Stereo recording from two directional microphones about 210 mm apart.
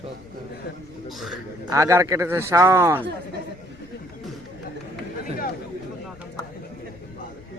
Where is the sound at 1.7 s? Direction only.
15° right (ahead or behind).